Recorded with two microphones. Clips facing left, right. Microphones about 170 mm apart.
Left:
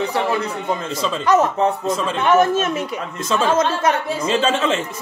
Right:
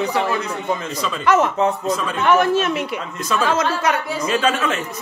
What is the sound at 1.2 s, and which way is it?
Speech, 40° left (ahead or behind).